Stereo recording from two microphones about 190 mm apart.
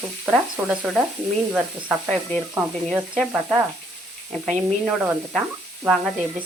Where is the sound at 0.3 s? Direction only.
5° right (ahead or behind).